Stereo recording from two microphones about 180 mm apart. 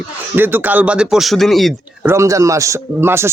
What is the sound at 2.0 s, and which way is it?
A man's voice, 15° right (ahead or behind).